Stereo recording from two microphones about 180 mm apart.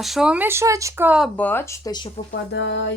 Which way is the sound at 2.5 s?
80° left.